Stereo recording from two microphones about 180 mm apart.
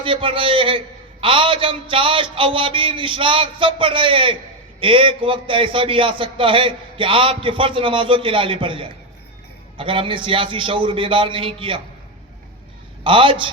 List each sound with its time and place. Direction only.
0.0 s a man's voice: 30° right (ahead or behind)
13.1 s a man's voice: 30° right (ahead or behind)